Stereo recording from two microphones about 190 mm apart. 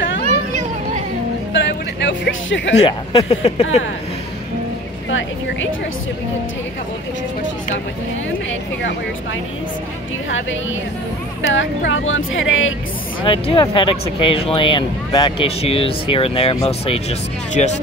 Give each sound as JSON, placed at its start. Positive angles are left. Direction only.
{"t": 1.5, "sound": "music", "side_deg": 70}
{"t": 2.8, "sound": "speech", "side_deg": 30}
{"t": 11.4, "sound": "speech", "side_deg": 75}
{"t": 13.2, "sound": "speech", "side_deg": 30}
{"t": 17.6, "sound": "speech", "side_deg": 35}